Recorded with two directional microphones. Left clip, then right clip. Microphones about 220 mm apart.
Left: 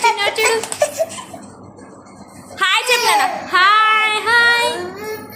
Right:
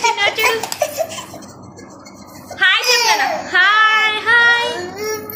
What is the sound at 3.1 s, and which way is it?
Child singing, 20° left (ahead or behind).